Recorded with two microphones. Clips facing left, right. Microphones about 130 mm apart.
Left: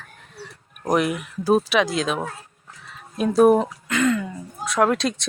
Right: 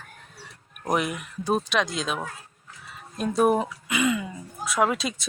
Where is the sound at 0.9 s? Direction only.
Centre (ahead or behind).